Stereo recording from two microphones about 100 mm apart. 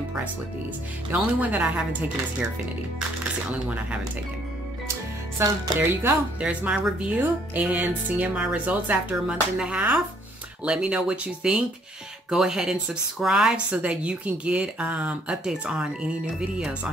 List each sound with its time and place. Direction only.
1.1 s speech: 10° right (ahead or behind)
3.5 s speech: 15° right (ahead or behind)
5.4 s speech: 25° right (ahead or behind)
6.4 s speech: 10° right (ahead or behind)